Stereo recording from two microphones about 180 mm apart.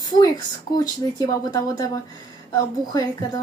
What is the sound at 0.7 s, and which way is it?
Speech, 20° left (ahead or behind).